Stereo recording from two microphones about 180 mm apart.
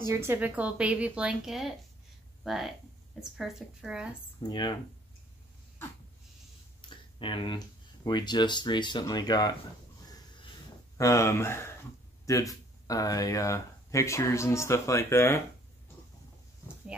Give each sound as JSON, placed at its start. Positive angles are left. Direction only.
{"t": 0.1, "sound": "a woman's voice", "side_deg": -15}
{"t": 4.4, "sound": "speech", "side_deg": 25}
{"t": 6.8, "sound": "a sound", "side_deg": 25}
{"t": 7.2, "sound": "speech", "side_deg": 25}
{"t": 10.0, "sound": "a sound", "side_deg": 20}
{"t": 11.0, "sound": "speech", "side_deg": 15}